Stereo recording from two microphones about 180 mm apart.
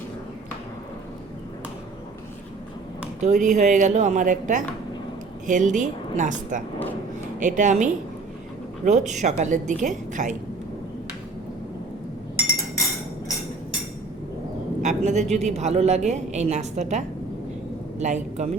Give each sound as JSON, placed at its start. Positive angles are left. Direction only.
{"t": 3.2, "sound": "a woman's voice", "side_deg": -45}
{"t": 14.8, "sound": "a woman's voice", "side_deg": -40}
{"t": 18.0, "sound": "a woman's voice", "side_deg": -40}